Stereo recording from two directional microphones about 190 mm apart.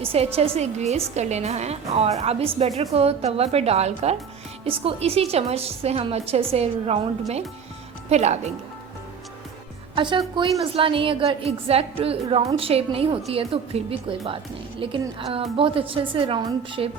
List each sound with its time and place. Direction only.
0.0 s a woman's voice: 30° right (ahead or behind)
9.9 s a woman's voice: 25° right (ahead or behind)
15.2 s a woman's voice: 30° right (ahead or behind)